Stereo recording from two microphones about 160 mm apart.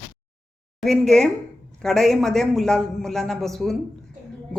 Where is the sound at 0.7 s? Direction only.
Centre (ahead or behind).